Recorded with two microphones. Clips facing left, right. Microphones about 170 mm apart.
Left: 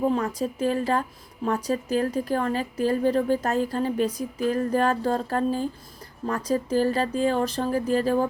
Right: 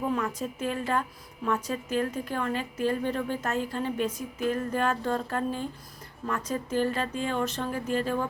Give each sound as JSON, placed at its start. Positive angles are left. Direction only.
{"t": 0.1, "sound": "a woman's voice", "side_deg": 35}